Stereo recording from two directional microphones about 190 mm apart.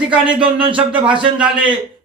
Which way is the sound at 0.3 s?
25° right (ahead or behind).